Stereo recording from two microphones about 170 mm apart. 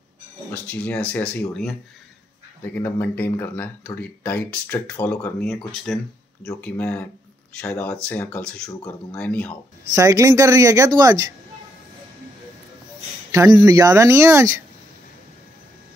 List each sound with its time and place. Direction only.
0.5 s speech: 10° left (ahead or behind)
9.9 s speech: 20° right (ahead or behind)
13.3 s speech: 20° right (ahead or behind)